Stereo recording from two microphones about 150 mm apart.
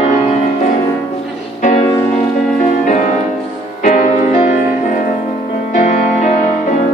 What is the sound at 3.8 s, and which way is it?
Music, 55° left (ahead or behind).